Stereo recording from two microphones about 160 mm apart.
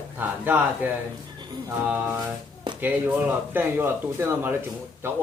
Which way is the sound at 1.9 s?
10° right (ahead or behind).